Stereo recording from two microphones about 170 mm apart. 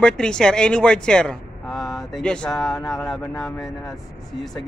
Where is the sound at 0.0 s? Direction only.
5° left (ahead or behind).